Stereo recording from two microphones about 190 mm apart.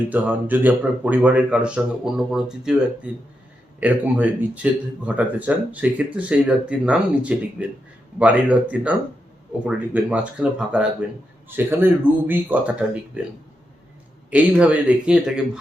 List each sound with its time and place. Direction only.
0.1 s speech: 10° right (ahead or behind)
14.3 s speech: 5° right (ahead or behind)